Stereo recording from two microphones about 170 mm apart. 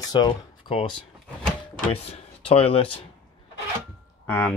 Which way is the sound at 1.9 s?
35° left (ahead or behind).